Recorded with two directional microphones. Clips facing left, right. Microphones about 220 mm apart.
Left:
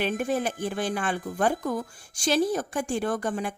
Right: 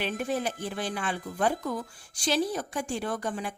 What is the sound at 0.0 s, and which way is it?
A woman's voice, 50° left (ahead or behind).